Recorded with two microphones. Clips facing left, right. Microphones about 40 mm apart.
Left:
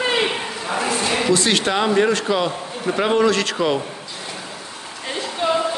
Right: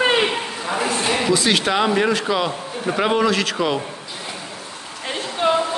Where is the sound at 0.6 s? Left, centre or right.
Centre.